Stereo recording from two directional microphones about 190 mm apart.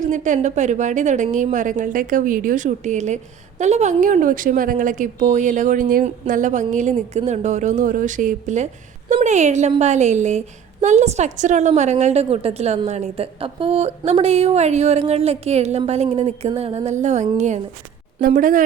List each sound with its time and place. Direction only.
0.0 s a woman's voice: 40° right (ahead or behind)